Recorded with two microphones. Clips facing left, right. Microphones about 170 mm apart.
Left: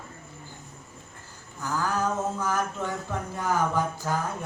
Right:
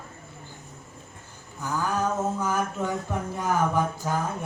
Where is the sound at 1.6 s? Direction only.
20° right (ahead or behind).